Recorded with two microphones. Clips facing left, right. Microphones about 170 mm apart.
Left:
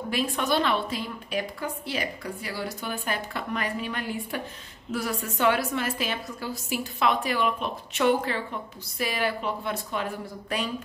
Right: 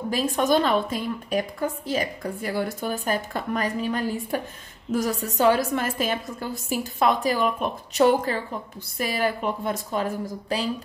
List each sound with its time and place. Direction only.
0.1 s a woman's voice: 45° right (ahead or behind)